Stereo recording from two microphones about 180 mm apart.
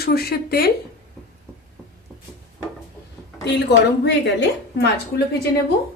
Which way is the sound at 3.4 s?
70° left (ahead or behind).